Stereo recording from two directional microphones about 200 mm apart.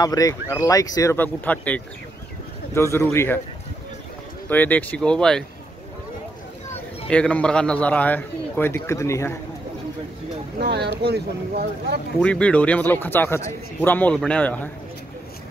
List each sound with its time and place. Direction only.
0.0 s a man's voice: 20° left (ahead or behind)
4.5 s a man's voice: 10° left (ahead or behind)
7.1 s a man's voice: 5° left (ahead or behind)
10.6 s speech: 55° right (ahead or behind)
12.2 s a man's voice: 5° left (ahead or behind)